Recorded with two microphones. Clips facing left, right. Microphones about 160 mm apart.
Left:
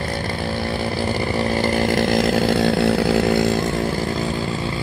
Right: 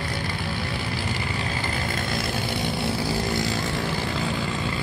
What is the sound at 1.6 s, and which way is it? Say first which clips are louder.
Chainsaw: left 11 dB; 75° left (ahead or behind).